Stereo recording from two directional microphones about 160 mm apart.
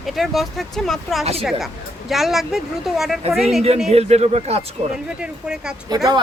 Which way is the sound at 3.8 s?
40° right (ahead or behind).